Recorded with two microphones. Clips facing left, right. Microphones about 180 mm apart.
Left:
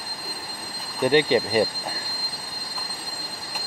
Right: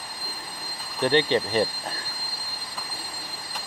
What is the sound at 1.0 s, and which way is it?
Speech, 10° left (ahead or behind).